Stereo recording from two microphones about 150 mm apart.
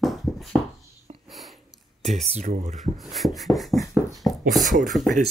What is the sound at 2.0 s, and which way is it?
Speech, 45° right (ahead or behind).